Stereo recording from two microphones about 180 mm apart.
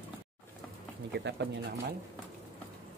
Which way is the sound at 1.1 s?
70° right (ahead or behind).